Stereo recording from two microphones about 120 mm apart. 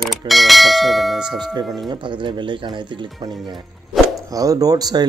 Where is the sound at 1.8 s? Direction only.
40° right (ahead or behind).